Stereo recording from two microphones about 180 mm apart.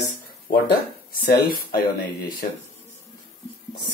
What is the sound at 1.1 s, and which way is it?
Speech, 55° left (ahead or behind).